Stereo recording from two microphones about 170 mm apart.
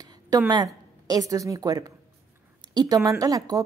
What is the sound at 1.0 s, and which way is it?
A woman's voice, 20° right (ahead or behind).